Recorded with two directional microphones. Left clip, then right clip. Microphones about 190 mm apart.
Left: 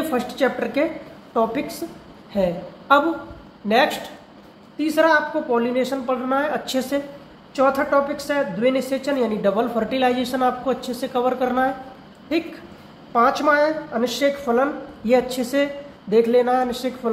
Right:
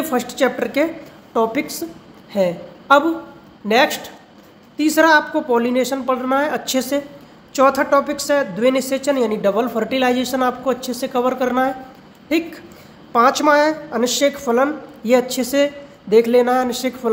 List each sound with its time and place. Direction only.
0.1 s a woman's voice: 30° right (ahead or behind)
4.7 s a woman's voice: 40° right (ahead or behind)
13.1 s speech: 40° right (ahead or behind)